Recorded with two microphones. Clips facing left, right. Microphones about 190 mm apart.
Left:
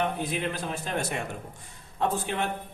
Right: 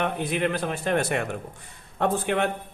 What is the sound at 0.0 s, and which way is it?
A man's voice, 65° right (ahead or behind).